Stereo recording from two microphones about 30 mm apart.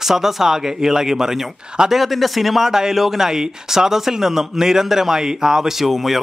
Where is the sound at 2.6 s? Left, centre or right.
Centre.